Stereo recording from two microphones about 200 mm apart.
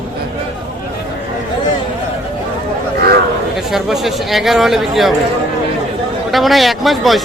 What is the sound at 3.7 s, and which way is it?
A man's voice, centre (ahead or behind).